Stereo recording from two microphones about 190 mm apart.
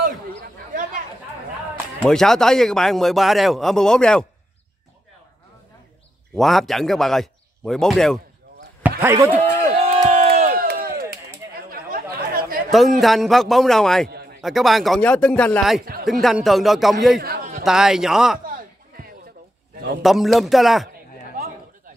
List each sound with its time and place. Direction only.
2.0 s a man's voice: centre (ahead or behind)
6.3 s a man's voice: centre (ahead or behind)
9.0 s speech: 15° right (ahead or behind)
9.4 s a sound: 40° right (ahead or behind)
9.9 s crowd: 30° right (ahead or behind); by 11.1 s 50° right (ahead or behind)
11.7 s chatter: 50° right (ahead or behind)
12.7 s a man's voice: centre (ahead or behind)
15.8 s a woman's voice: 50° right (ahead or behind)
16.1 s a man's voice: centre (ahead or behind)
17.2 s a sound: 50° right (ahead or behind)
17.6 s a man's voice: 5° right (ahead or behind)
18.4 s a sound: 45° right (ahead or behind)
20.0 s a man's voice: centre (ahead or behind)